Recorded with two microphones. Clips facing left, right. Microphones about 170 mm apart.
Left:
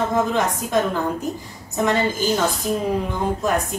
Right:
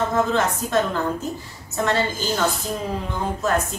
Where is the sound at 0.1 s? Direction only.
15° left (ahead or behind).